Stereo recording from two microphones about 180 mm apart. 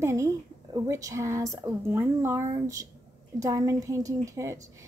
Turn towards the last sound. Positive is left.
turn(degrees=-15)  # may be behind; listen again after turning